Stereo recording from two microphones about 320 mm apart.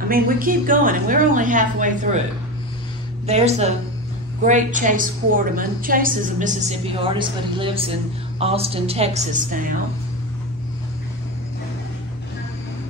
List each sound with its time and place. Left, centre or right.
0.1 s a woman's voice: right
3.3 s a woman's voice: centre